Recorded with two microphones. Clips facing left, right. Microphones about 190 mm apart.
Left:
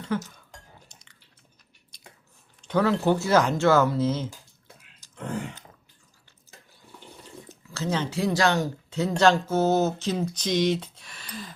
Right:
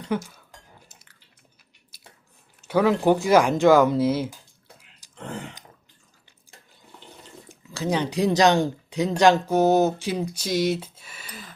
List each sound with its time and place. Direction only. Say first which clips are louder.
0.1 s dishes: right 2 dB; 10° right (ahead or behind)
0.9 s squish: even; 5° right (ahead or behind)
1.9 s chewing: even; 5° right (ahead or behind)
2.6 s speech: right 3 dB; 10° right (ahead or behind)
5.0 s a sound: even; 15° right (ahead or behind)
7.4 s speech: right 3 dB; 15° right (ahead or behind)